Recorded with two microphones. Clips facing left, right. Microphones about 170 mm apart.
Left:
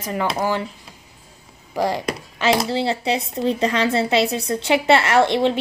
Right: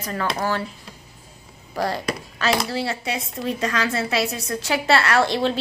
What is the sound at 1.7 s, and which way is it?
Speech, 15° left (ahead or behind).